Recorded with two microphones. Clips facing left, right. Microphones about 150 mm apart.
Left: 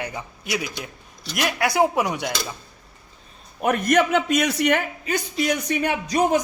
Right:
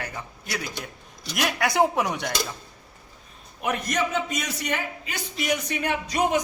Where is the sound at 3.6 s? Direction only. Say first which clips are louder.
Left 7 dB; 55° left (ahead or behind).